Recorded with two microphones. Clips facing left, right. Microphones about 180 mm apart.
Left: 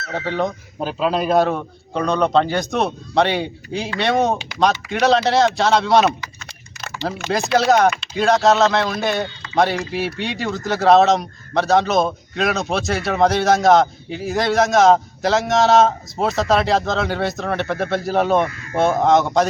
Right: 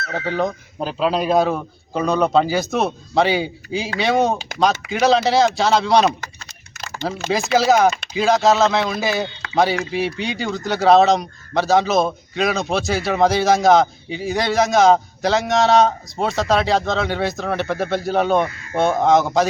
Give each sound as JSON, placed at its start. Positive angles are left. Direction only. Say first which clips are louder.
{"t": 0.1, "sound": "speech", "louder": "even", "side_deg": 0}
{"t": 4.4, "sound": "speech", "louder": "right 1 dB", "side_deg": -45}
{"t": 4.9, "sound": "speech", "louder": "right 1 dB", "side_deg": 0}
{"t": 7.3, "sound": "speech", "louder": "even", "side_deg": 0}